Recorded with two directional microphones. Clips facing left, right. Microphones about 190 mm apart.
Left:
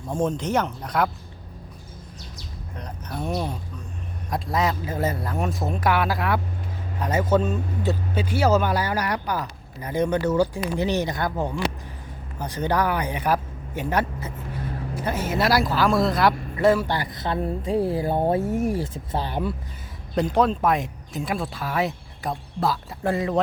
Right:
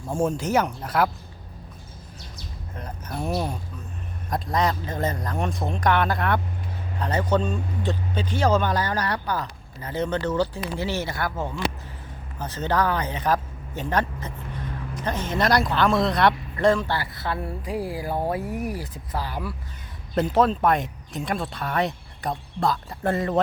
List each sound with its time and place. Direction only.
0.1 s speech: 10° right (ahead or behind)
2.7 s a woman's voice: 5° right (ahead or behind); by 19.5 s 25° left (ahead or behind)
20.1 s speech: centre (ahead or behind)